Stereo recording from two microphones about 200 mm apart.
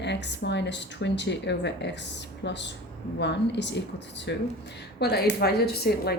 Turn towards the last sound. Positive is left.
turn(degrees=50)  # may be behind; listen again after turning